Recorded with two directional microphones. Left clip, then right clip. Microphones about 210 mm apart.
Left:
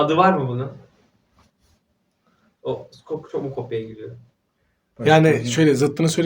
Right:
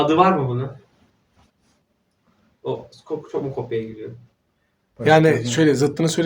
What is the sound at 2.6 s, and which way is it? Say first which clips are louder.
Speech: even; 5° right (ahead or behind).